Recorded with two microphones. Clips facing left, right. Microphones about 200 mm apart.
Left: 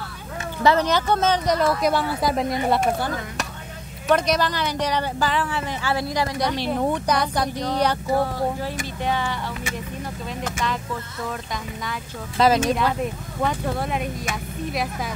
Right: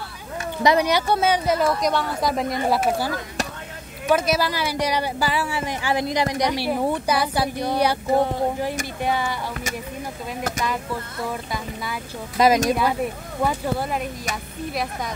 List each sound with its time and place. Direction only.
0.6 s speech: 15° right (ahead or behind)
4.1 s speech: 5° right (ahead or behind)
8.1 s speech: 20° right (ahead or behind)
10.6 s speech: 10° right (ahead or behind)